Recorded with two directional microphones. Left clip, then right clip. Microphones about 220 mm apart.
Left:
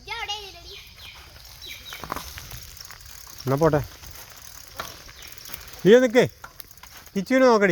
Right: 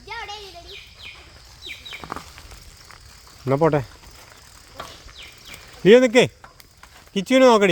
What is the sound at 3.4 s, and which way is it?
Speech, 15° right (ahead or behind).